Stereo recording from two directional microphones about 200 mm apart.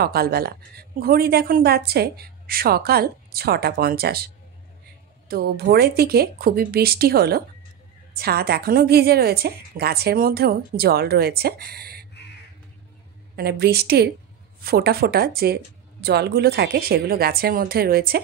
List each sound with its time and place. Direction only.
0.0 s a woman's voice: 50° right (ahead or behind)
5.3 s a woman's voice: 50° right (ahead or behind)
13.4 s a woman's voice: 55° right (ahead or behind)